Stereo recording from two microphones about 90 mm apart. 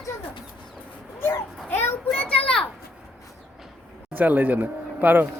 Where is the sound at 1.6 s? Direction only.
25° left (ahead or behind).